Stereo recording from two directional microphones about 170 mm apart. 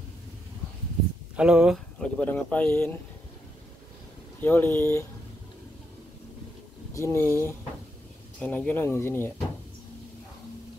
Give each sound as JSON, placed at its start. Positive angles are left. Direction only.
{"t": 1.3, "sound": "speech", "side_deg": -5}
{"t": 2.0, "sound": "speech", "side_deg": 10}
{"t": 4.4, "sound": "speech", "side_deg": 10}
{"t": 6.9, "sound": "speech", "side_deg": 15}